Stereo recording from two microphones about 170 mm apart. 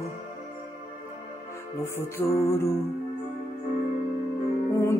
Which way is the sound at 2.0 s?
15° left (ahead or behind).